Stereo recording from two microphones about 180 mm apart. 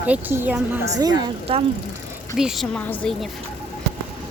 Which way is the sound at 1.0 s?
20° right (ahead or behind).